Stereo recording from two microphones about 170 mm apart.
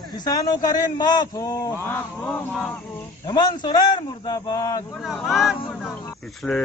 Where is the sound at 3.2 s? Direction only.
25° left (ahead or behind).